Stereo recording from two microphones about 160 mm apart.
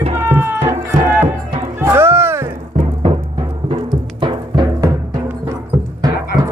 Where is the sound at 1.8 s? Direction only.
15° right (ahead or behind).